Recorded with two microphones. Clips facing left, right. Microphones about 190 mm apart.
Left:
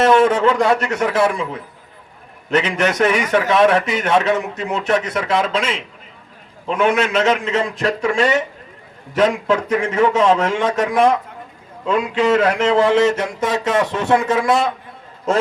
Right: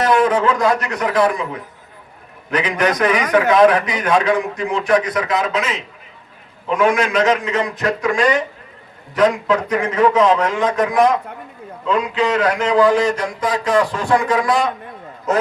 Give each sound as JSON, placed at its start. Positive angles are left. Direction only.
{"t": 0.0, "sound": "a sound", "side_deg": 25}
{"t": 0.6, "sound": "a man's voice", "side_deg": 30}
{"t": 3.0, "sound": "a man's voice", "side_deg": 25}
{"t": 11.9, "sound": "a man's voice", "side_deg": 45}
{"t": 12.3, "sound": "a man's voice", "side_deg": 25}